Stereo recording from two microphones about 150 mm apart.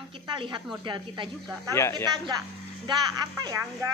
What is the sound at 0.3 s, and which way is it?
Speech, 30° right (ahead or behind).